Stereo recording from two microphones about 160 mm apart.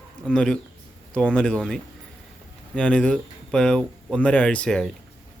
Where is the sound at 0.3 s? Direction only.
5° left (ahead or behind).